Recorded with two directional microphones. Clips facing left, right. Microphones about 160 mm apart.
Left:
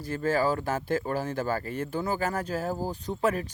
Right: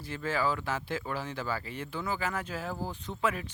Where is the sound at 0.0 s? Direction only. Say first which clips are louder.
Left 5 dB; 40° left (ahead or behind).